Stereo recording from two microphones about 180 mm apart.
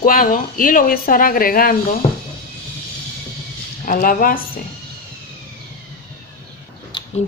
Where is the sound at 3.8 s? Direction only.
50° left (ahead or behind).